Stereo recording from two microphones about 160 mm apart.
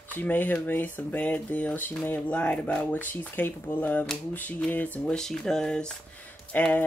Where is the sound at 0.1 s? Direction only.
10° left (ahead or behind).